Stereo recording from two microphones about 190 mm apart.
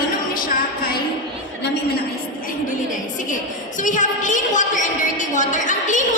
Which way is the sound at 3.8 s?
40° left (ahead or behind).